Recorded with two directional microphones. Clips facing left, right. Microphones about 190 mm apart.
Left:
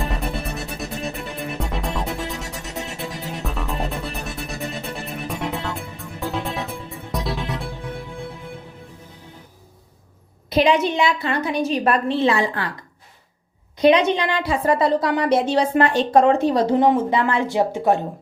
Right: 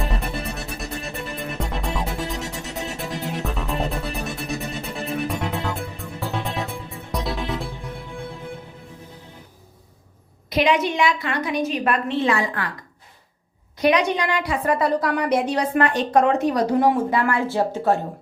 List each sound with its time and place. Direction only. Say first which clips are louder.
0.4 s music: left 1 dB; centre (ahead or behind)
10.5 s a woman's voice: left 2 dB; 30° left (ahead or behind)
13.7 s a woman's voice: left 4 dB; 25° left (ahead or behind)